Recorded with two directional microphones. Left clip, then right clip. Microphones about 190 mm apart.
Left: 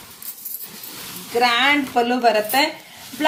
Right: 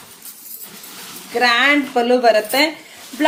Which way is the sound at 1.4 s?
30° right (ahead or behind).